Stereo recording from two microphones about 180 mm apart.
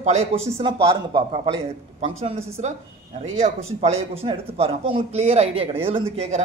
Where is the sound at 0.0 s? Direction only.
40° right (ahead or behind).